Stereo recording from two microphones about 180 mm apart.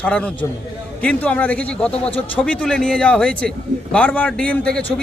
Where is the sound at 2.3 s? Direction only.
5° left (ahead or behind).